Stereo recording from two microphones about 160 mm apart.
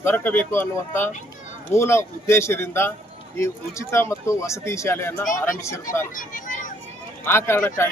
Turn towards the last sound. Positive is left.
turn(degrees=15)  # may be behind; listen again after turning